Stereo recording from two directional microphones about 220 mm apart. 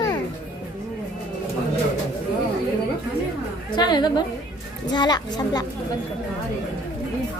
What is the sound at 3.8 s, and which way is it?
Speech, 20° left (ahead or behind).